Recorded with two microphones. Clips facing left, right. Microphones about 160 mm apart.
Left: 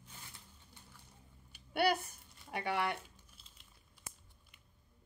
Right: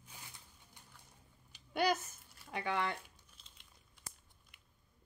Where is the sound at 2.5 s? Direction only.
10° left (ahead or behind).